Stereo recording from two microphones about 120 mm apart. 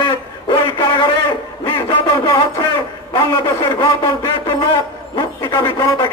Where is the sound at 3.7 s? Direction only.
40° left (ahead or behind).